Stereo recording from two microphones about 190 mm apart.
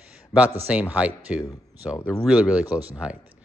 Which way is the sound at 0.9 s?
5° right (ahead or behind).